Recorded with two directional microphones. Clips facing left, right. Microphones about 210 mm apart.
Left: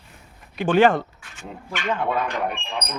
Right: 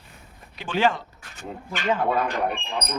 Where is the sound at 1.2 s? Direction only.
40° right (ahead or behind).